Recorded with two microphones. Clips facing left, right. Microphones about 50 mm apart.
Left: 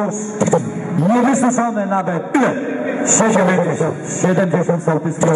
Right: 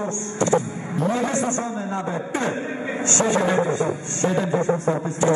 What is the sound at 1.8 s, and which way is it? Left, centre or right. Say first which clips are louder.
A man's voice: left 9 dB; left.